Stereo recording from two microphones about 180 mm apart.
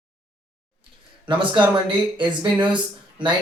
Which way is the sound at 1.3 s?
25° right (ahead or behind).